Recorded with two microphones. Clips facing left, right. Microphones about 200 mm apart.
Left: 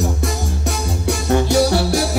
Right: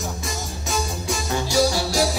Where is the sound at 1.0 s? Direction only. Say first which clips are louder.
Left 13 dB; 60° left (ahead or behind).